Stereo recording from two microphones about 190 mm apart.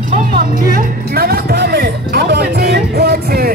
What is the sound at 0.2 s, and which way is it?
Music, 50° right (ahead or behind).